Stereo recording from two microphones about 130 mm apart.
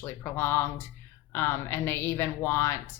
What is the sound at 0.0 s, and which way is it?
A woman's voice, 20° left (ahead or behind).